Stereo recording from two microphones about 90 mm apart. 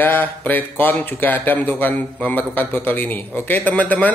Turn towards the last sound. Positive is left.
turn(degrees=15)  # may be behind; listen again after turning